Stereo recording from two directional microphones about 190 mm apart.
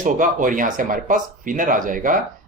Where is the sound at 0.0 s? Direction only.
45° right (ahead or behind).